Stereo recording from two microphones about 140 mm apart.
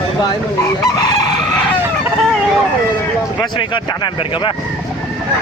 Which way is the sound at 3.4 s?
35° left (ahead or behind).